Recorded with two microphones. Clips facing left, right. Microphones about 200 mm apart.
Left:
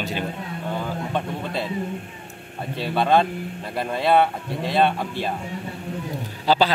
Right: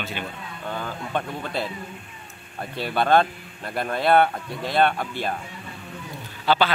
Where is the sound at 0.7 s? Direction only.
Centre (ahead or behind).